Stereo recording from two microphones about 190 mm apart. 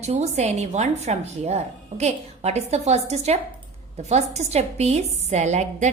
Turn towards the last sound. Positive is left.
turn(degrees=-40)  # may be behind; listen again after turning